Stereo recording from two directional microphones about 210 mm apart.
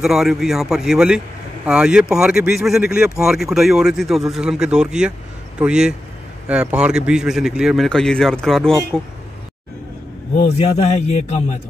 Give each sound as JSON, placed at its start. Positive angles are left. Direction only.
{"t": 0.0, "sound": "speech", "side_deg": 0}
{"t": 10.6, "sound": "a man's voice", "side_deg": 30}